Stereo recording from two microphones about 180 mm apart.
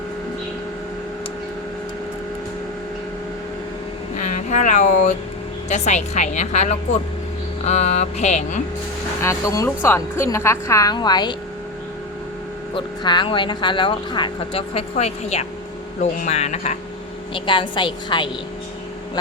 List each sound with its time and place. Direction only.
4.2 s a sound: 40° left (ahead or behind)
5.6 s a woman's voice: 40° left (ahead or behind)
9.2 s a woman's voice: 15° left (ahead or behind)
12.7 s a woman's voice: 25° left (ahead or behind)
17.3 s speech: 30° left (ahead or behind)